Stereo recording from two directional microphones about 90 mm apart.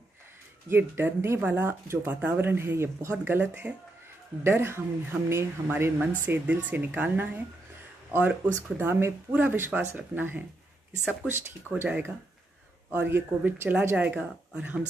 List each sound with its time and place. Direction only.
0.7 s speech: 25° right (ahead or behind)
11.7 s speech: 20° right (ahead or behind)